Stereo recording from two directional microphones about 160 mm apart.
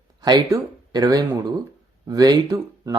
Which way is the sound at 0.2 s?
25° right (ahead or behind).